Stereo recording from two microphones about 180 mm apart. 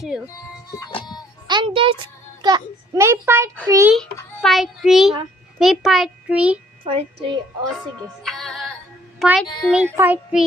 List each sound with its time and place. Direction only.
0.9 s music: 25° left (ahead or behind)
1.5 s music: 30° right (ahead or behind)
2.4 s a child's voice: 20° right (ahead or behind)
4.4 s a child's voice: centre (ahead or behind)
6.8 s a woman's voice: 25° right (ahead or behind)
8.2 s music: centre (ahead or behind)
9.1 s a child's voice: 5° right (ahead or behind)